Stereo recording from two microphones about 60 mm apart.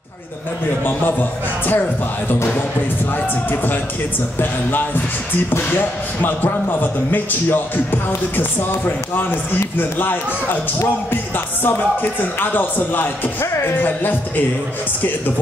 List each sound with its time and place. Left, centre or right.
1.7 s speech: left